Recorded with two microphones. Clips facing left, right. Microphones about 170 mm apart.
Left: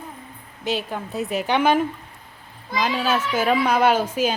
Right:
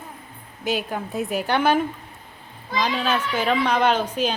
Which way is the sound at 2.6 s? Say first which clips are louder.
Left 1 dB; 10° left (ahead or behind).